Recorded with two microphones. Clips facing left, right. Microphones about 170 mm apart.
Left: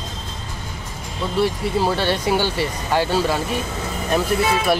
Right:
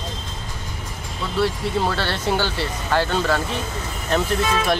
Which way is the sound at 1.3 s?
15° left (ahead or behind).